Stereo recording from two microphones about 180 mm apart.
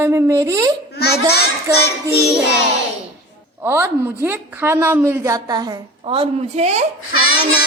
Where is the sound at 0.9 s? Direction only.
60° left (ahead or behind).